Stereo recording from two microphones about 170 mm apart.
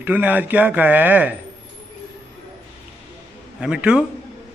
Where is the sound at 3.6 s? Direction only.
5° right (ahead or behind).